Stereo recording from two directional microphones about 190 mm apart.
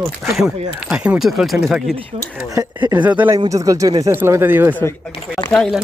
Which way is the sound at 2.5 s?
20° right (ahead or behind).